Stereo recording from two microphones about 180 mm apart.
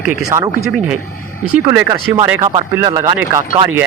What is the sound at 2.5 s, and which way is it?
Speech, 25° right (ahead or behind).